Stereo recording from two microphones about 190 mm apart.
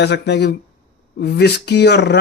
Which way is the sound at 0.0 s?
65° left (ahead or behind).